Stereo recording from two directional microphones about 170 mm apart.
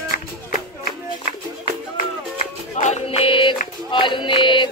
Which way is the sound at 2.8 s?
40° left (ahead or behind).